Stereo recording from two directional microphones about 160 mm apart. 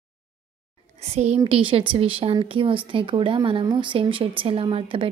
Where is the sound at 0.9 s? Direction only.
40° right (ahead or behind).